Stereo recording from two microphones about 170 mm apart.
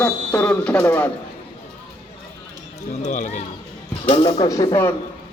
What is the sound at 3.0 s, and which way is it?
Speech, 45° left (ahead or behind).